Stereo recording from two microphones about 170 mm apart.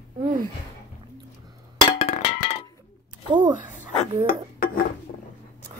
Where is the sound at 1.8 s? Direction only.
30° left (ahead or behind).